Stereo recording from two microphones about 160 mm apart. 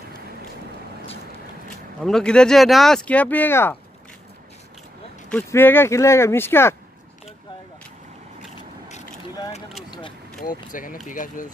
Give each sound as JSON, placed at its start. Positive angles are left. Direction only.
{"t": 2.0, "sound": "speech", "side_deg": 5}
{"t": 5.3, "sound": "speech", "side_deg": 15}
{"t": 10.4, "sound": "speech", "side_deg": 60}